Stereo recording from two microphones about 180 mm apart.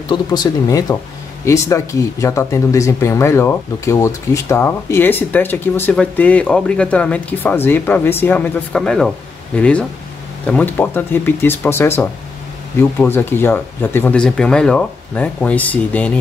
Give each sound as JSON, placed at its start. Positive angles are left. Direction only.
{"t": 0.1, "sound": "speech", "side_deg": 20}